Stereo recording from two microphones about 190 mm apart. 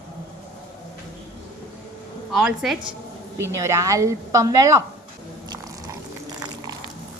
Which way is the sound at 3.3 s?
15° right (ahead or behind).